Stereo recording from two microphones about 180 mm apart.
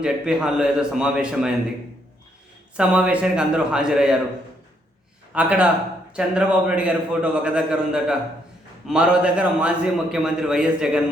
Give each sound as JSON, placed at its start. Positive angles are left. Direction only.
{"t": 0.0, "sound": "a man's voice", "side_deg": -5}
{"t": 2.7, "sound": "a man's voice", "side_deg": -5}
{"t": 5.3, "sound": "a man's voice", "side_deg": -5}